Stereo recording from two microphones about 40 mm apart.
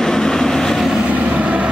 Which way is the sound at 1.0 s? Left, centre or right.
Right.